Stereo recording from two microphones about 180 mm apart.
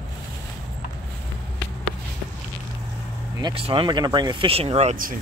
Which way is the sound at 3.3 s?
30° right (ahead or behind).